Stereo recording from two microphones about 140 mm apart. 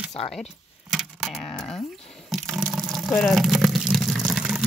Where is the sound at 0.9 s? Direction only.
Centre (ahead or behind).